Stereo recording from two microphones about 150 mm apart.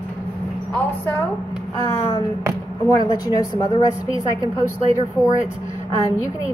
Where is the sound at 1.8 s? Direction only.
25° left (ahead or behind).